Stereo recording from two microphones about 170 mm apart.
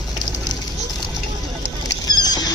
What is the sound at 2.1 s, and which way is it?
Rodents, 25° left (ahead or behind).